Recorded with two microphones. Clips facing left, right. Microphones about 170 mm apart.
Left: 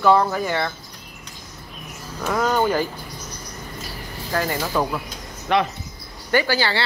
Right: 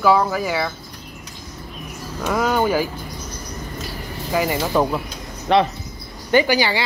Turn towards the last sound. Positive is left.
turn(degrees=-15)  # may be behind; listen again after turning